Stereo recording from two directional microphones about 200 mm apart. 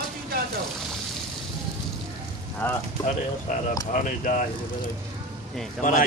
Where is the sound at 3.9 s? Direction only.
40° left (ahead or behind).